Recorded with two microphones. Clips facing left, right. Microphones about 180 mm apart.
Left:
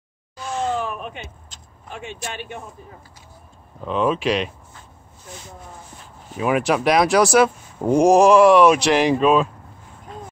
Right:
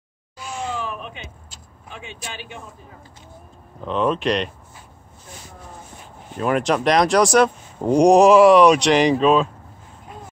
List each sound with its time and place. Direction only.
0.7 s a sound: 50° left (ahead or behind)
1.9 s speech: 50° left (ahead or behind)
3.8 s speech: 5° left (ahead or behind)
6.3 s speech: 5° left (ahead or behind)